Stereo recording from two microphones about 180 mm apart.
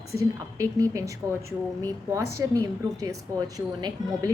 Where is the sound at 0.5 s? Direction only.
20° right (ahead or behind).